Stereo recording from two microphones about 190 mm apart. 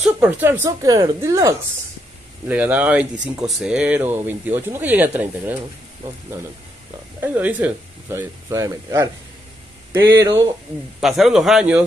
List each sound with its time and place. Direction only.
0.0 s speech: 10° right (ahead or behind)
7.2 s speech: 10° right (ahead or behind)
11.0 s speech: centre (ahead or behind)